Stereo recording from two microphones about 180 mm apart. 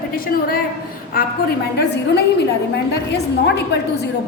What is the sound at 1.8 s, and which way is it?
Speech, 70° left (ahead or behind).